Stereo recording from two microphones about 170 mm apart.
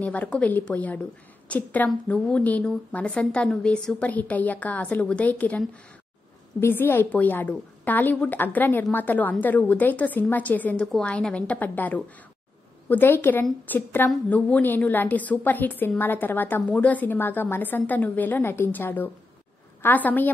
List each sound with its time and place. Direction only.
0.0 s a woman's voice: 10° left (ahead or behind)